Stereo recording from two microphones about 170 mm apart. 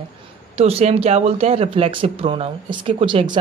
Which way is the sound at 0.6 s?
35° right (ahead or behind).